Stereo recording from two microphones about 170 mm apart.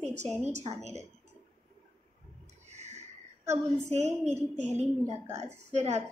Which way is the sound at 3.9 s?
40° right (ahead or behind).